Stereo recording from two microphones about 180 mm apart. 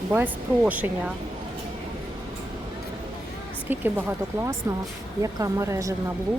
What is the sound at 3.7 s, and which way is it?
A woman's voice, 10° right (ahead or behind).